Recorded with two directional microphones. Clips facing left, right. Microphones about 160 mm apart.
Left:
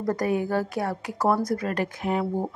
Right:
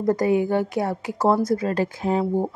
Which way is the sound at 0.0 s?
25° right (ahead or behind).